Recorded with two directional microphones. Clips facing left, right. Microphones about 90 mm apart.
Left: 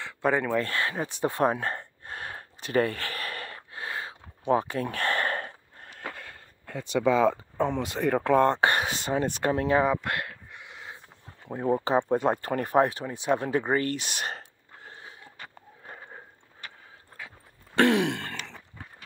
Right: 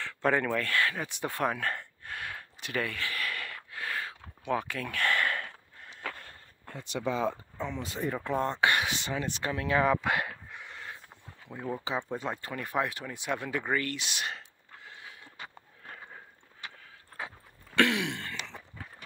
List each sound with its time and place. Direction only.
0.0 s speech: 10° left (ahead or behind)
0.6 s gasp: 25° left (ahead or behind)
6.1 s a sound: 90° left
7.5 s speech: 60° left (ahead or behind)
8.5 s speech: 40° left (ahead or behind)
10.0 s a sound: centre (ahead or behind)
11.4 s speech: 45° left (ahead or behind)
13.0 s speech: 30° left (ahead or behind)
13.9 s a sound: 45° left (ahead or behind)
15.8 s sniff: 25° left (ahead or behind)
17.7 s throat clearing: 40° left (ahead or behind)